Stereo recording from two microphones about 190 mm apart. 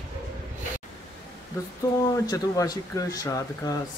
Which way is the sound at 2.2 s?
20° left (ahead or behind).